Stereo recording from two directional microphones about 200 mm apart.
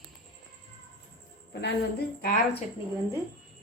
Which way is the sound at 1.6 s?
50° left (ahead or behind).